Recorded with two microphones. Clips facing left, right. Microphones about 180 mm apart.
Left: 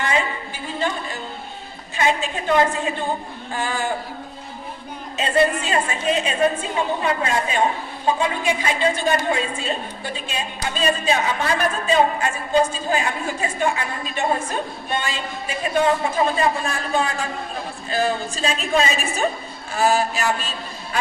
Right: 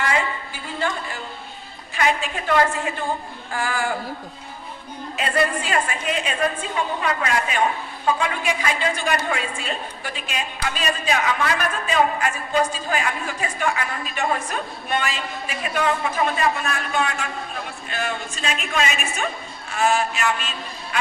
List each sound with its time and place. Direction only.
0.0 s a sound: 20° left (ahead or behind)
2.0 s a woman's voice: 25° left (ahead or behind)
5.1 s a woman's voice: 25° left (ahead or behind)